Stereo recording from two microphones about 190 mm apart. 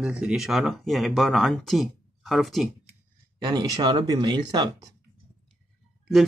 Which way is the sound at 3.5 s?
20° right (ahead or behind).